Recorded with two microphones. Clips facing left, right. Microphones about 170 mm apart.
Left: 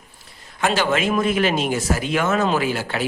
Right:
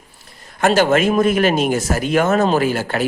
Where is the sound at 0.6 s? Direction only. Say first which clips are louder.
Right 6 dB; 45° right (ahead or behind).